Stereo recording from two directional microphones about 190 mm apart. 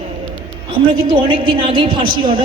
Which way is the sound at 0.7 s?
25° right (ahead or behind).